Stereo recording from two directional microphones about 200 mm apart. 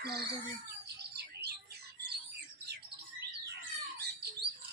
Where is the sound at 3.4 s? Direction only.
55° right (ahead or behind).